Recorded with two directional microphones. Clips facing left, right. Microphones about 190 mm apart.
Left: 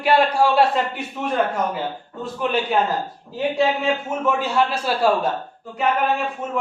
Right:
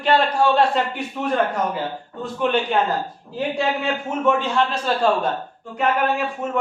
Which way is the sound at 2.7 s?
5° left (ahead or behind).